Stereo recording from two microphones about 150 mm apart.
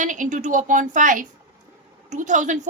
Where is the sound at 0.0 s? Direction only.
60° right (ahead or behind).